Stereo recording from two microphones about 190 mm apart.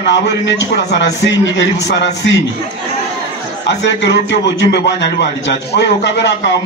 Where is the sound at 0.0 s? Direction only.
65° left (ahead or behind).